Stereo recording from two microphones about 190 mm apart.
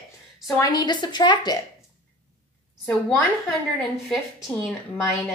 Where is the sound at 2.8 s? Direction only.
10° left (ahead or behind).